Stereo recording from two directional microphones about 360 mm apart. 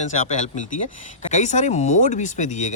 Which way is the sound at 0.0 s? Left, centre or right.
Centre.